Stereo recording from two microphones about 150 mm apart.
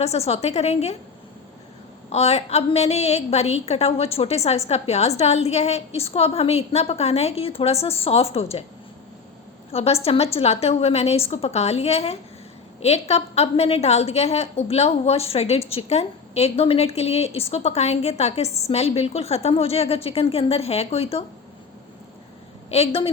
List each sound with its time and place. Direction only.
0.0 s a woman's voice: 45° left (ahead or behind)
2.0 s a woman's voice: 45° left (ahead or behind)
9.7 s a woman's voice: 40° left (ahead or behind)
22.7 s a woman's voice: 40° left (ahead or behind)